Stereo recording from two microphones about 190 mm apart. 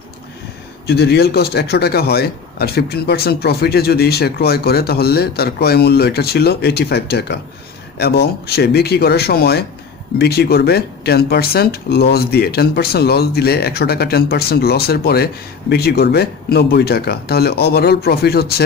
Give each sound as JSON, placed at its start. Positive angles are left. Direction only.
{"t": 0.8, "sound": "speech", "side_deg": 60}